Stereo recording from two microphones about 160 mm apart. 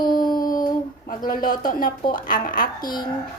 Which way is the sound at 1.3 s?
55° left (ahead or behind).